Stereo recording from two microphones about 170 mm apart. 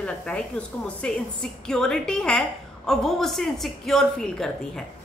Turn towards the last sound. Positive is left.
turn(degrees=0)  # may be behind; listen again after turning